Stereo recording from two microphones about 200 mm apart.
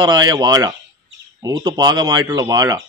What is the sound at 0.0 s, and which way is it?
Speech, 20° right (ahead or behind).